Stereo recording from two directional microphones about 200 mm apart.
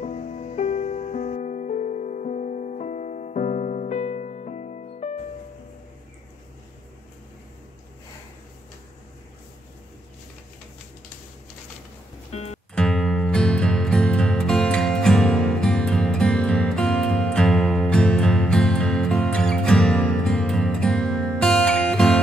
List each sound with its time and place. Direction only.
0.0 s music: 35° left (ahead or behind)
12.3 s music: 35° left (ahead or behind)
12.7 s music: 5° left (ahead or behind)